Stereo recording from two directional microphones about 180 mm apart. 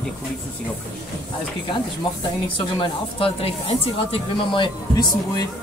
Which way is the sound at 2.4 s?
30° left (ahead or behind).